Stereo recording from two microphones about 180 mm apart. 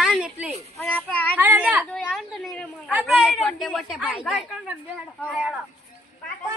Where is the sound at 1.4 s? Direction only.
10° right (ahead or behind).